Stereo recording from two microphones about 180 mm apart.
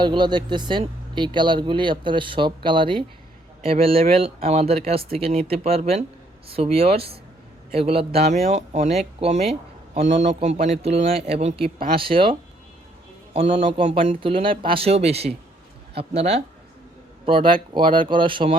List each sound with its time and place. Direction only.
0.0 s speech: 25° right (ahead or behind)